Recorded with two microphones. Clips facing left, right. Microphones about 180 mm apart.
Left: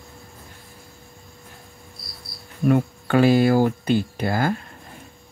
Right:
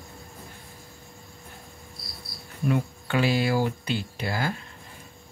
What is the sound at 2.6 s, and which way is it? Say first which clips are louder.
Speech: left 7 dB; 50° left (ahead or behind).